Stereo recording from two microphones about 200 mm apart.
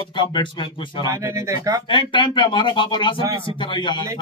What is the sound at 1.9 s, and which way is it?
Speech, 25° left (ahead or behind).